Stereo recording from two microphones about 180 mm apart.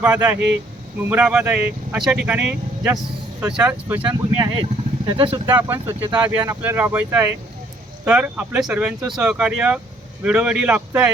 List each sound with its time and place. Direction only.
0.0 s speech: 10° right (ahead or behind)
5.0 s speech: 30° right (ahead or behind)
5.5 s speech: 10° right (ahead or behind)